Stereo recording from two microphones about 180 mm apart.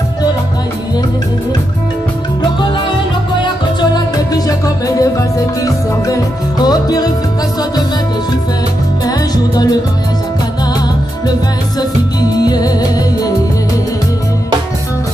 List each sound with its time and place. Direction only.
6.6 s music: 20° left (ahead or behind)
12.2 s music: 20° left (ahead or behind)